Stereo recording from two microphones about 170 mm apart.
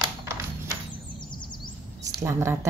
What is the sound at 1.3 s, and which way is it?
Bird, 25° left (ahead or behind).